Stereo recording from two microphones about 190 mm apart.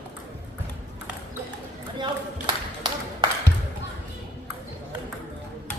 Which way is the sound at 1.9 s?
25° right (ahead or behind).